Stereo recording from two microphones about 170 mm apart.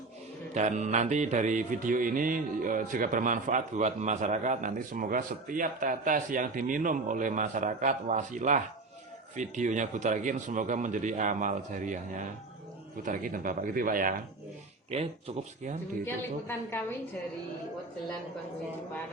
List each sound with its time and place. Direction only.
0.5 s mantra: 45° right (ahead or behind)
13.0 s mantra: 50° right (ahead or behind)
15.3 s speech: 35° right (ahead or behind)
16.0 s a woman's voice: 10° left (ahead or behind)